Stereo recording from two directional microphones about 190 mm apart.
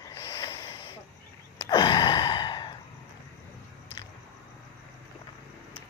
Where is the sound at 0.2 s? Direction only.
20° left (ahead or behind).